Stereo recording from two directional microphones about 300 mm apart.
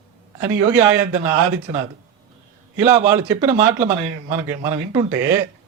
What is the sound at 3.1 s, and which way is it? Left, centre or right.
Speech, centre.